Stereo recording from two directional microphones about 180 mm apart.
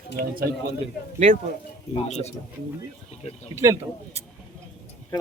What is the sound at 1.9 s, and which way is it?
Speech, 35° left (ahead or behind).